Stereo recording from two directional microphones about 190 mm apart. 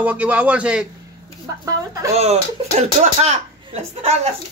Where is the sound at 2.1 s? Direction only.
35° right (ahead or behind).